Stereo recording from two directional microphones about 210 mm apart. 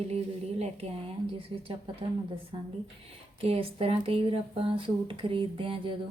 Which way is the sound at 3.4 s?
30° right (ahead or behind).